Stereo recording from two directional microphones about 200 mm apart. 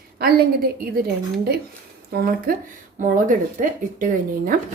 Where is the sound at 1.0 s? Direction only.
50° right (ahead or behind).